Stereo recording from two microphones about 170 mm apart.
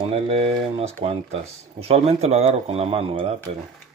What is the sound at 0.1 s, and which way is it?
Speech, 35° right (ahead or behind).